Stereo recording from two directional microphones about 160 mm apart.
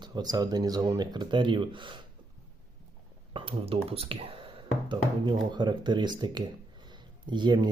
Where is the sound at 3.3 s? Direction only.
35° right (ahead or behind).